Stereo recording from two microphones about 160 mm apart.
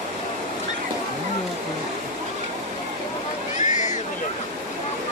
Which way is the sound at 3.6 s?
50° left (ahead or behind).